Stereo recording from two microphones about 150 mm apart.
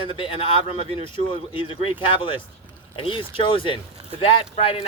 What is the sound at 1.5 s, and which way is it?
A man's voice, 35° left (ahead or behind).